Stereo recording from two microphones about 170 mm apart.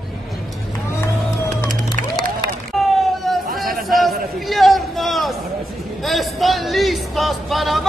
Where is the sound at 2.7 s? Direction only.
Centre (ahead or behind).